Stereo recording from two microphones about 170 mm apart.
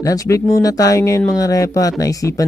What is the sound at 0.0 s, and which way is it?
Speech, 20° left (ahead or behind).